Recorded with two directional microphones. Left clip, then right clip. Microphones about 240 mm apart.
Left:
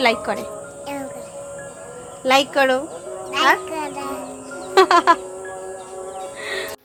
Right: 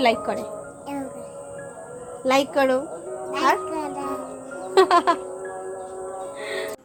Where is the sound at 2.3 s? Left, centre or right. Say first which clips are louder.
Left 4 dB; centre.